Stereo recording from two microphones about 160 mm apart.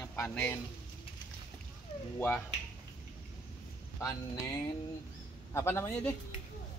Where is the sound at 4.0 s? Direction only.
20° left (ahead or behind).